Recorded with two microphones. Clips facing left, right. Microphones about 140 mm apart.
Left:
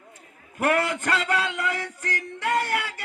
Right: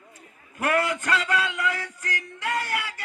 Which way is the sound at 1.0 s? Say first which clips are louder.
Even; 25° left (ahead or behind).